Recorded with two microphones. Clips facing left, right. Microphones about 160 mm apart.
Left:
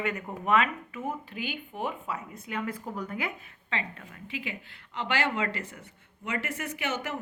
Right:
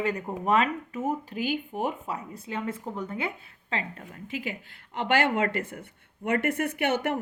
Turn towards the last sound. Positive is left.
turn(degrees=-60)  # may be behind; listen again after turning